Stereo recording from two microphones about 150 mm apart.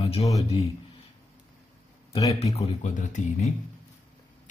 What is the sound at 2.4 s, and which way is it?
Speech, 50° left (ahead or behind).